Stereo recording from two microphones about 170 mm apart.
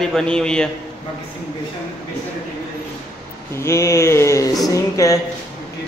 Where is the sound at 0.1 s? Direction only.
5° left (ahead or behind).